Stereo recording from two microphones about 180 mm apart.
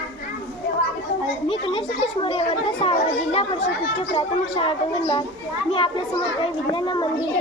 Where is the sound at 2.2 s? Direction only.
30° left (ahead or behind).